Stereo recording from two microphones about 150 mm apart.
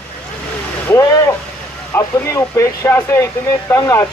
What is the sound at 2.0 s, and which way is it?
Speech, 20° left (ahead or behind).